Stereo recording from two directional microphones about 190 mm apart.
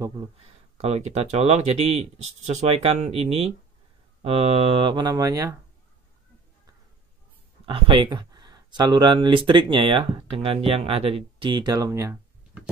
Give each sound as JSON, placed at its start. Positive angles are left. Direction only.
{"t": 0.7, "sound": "speech", "side_deg": -35}
{"t": 7.6, "sound": "speech", "side_deg": -25}